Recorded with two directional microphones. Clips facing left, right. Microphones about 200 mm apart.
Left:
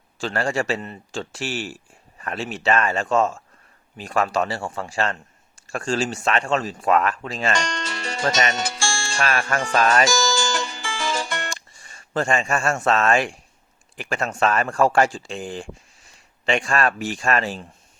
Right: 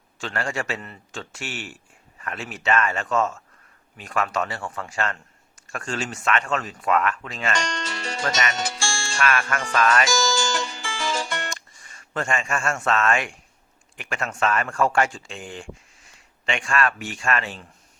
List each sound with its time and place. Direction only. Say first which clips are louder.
0.2 s speech: left 5 dB; 35° left (ahead or behind)
7.7 s music: left 1 dB; 55° left (ahead or behind)
9.1 s speech: left 1 dB; 35° left (ahead or behind)
10.1 s music: left 1 dB; 55° left (ahead or behind)
11.7 s speech: left 5 dB; 30° left (ahead or behind)